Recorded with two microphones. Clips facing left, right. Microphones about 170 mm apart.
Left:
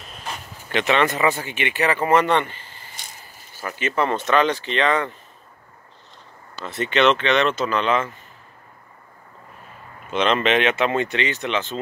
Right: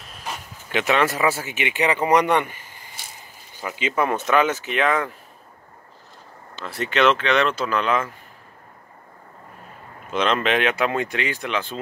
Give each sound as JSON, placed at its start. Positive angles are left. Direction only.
{"t": 0.0, "sound": "a sound", "side_deg": -5}
{"t": 0.7, "sound": "speech", "side_deg": -5}
{"t": 6.6, "sound": "speech", "side_deg": 0}
{"t": 10.1, "sound": "speech", "side_deg": 0}